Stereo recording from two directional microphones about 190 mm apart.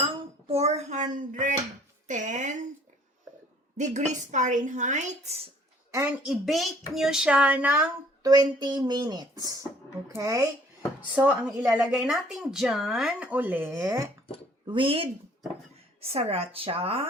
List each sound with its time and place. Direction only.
0.4 s a sound: 35° right (ahead or behind)
2.0 s music: 40° right (ahead or behind)
3.8 s speech: 40° right (ahead or behind)
5.9 s a woman's voice: 15° right (ahead or behind)
6.2 s speech: centre (ahead or behind)
8.2 s speech: 20° right (ahead or behind)
14.7 s speech: 25° right (ahead or behind)